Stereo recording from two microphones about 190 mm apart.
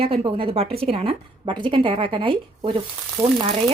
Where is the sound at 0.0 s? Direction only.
25° right (ahead or behind).